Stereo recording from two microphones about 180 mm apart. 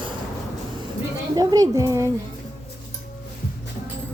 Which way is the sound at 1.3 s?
20° right (ahead or behind).